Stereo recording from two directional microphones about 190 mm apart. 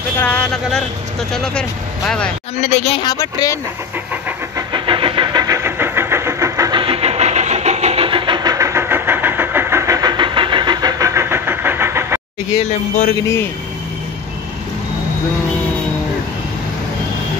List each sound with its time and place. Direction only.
0.2 s speech: 5° left (ahead or behind)
2.5 s speech: 35° left (ahead or behind)
3.1 s speech: 20° left (ahead or behind)
4.7 s vehicle: 25° right (ahead or behind)